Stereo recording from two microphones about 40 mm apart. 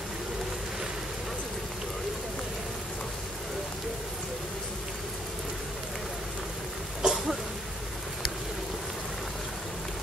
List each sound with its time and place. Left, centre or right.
7.0 s cough: centre